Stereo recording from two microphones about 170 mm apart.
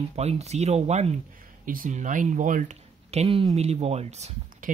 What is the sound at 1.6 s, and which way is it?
Speech, 50° right (ahead or behind).